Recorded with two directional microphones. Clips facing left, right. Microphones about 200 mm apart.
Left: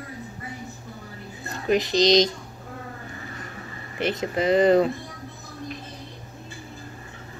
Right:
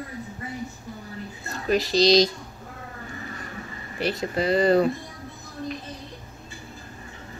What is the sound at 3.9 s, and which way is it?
Speech, 20° left (ahead or behind).